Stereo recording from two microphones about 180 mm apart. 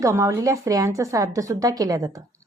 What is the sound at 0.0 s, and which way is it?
A woman's voice, 15° right (ahead or behind).